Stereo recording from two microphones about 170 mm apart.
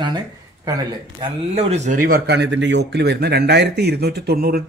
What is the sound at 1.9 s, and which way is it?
Speech, 60° right (ahead or behind).